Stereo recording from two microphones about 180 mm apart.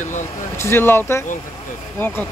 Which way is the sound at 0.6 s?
15° left (ahead or behind).